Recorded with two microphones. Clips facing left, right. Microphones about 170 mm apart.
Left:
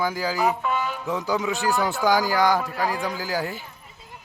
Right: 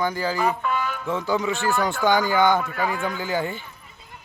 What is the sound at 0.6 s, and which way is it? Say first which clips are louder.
Music: even; 20° left (ahead or behind).